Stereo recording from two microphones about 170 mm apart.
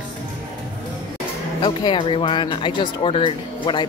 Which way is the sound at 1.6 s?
30° left (ahead or behind).